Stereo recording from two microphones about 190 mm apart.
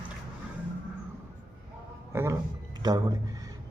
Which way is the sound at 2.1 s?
15° right (ahead or behind).